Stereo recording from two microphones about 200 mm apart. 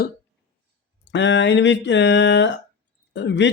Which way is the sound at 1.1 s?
60° left (ahead or behind).